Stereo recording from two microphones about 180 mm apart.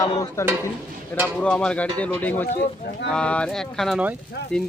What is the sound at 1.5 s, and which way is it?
Cutlery, 5° left (ahead or behind).